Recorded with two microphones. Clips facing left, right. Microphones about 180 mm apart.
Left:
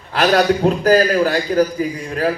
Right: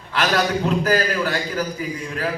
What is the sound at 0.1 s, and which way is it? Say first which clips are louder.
A man's voice: left 6 dB; 35° left (ahead or behind).